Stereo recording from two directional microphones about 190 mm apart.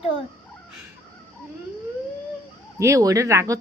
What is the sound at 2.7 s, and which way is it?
Speech, 15° right (ahead or behind).